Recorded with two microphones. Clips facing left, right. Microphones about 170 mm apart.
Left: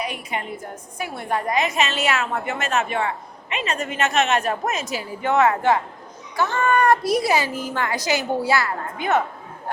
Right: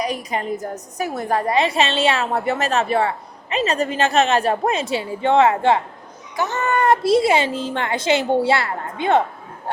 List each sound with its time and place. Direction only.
0.0 s a woman's voice: 35° right (ahead or behind)